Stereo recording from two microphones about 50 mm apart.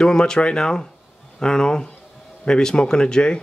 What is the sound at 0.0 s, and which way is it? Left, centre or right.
A man's voice, centre.